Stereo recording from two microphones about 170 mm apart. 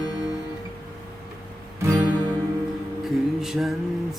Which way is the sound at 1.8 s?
15° right (ahead or behind).